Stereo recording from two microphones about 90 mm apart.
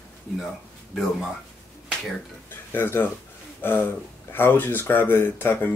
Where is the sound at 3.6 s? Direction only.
25° left (ahead or behind).